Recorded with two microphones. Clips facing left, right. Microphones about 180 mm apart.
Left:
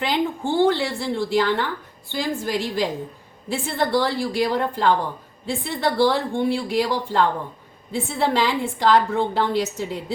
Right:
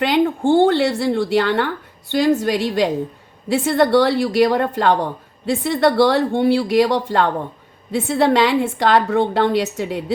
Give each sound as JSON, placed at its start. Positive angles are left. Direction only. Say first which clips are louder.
{"t": 0.0, "sound": "a woman's voice", "louder": "right 7 dB", "side_deg": -65}